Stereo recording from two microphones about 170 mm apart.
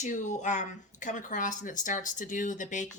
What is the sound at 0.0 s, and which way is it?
A woman's voice, 45° left (ahead or behind).